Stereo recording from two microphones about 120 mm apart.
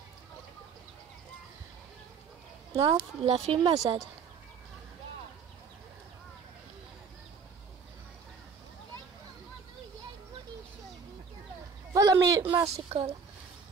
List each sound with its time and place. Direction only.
2.7 s speech: 55° right (ahead or behind)
11.9 s a sound: 30° right (ahead or behind)
12.6 s speech: 60° right (ahead or behind)